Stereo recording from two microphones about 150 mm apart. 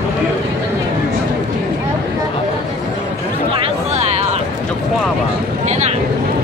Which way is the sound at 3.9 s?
45° right (ahead or behind).